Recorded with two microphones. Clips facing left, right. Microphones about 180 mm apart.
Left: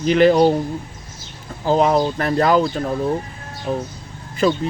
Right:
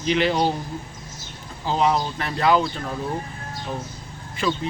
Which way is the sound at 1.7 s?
50° left (ahead or behind).